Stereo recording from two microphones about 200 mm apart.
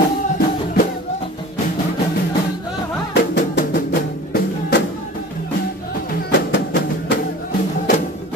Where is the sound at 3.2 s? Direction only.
55° left (ahead or behind).